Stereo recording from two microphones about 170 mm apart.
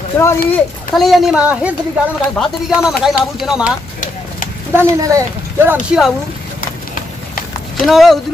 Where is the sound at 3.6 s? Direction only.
50° left (ahead or behind).